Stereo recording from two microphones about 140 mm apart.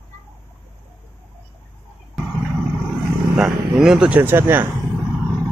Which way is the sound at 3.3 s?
5° right (ahead or behind).